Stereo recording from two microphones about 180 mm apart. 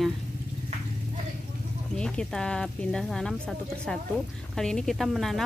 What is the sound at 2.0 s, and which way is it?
Speech, 5° left (ahead or behind).